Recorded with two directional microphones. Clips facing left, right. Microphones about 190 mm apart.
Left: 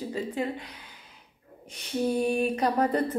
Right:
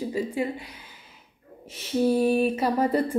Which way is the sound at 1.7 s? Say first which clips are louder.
Right 5 dB; 5° right (ahead or behind).